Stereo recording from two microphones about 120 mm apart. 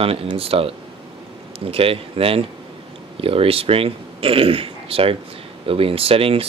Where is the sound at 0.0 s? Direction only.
50° right (ahead or behind).